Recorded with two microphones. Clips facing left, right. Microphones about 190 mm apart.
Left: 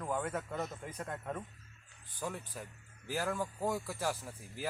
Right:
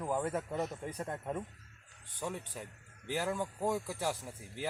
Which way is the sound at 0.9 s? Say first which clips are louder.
Right 2 dB; 30° right (ahead or behind).